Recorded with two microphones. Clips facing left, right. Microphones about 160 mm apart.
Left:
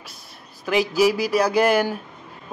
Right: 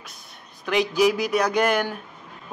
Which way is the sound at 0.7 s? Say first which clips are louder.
Left 1 dB; 5° left (ahead or behind).